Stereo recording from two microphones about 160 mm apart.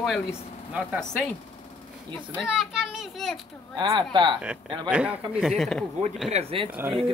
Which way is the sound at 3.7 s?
30° right (ahead or behind).